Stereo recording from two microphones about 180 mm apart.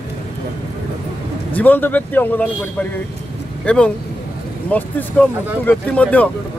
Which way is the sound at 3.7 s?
5° left (ahead or behind).